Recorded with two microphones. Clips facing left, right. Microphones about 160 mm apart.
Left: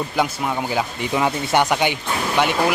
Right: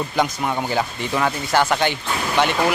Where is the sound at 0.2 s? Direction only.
Centre (ahead or behind).